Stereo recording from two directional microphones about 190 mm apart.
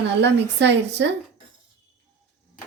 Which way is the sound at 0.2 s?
65° right (ahead or behind).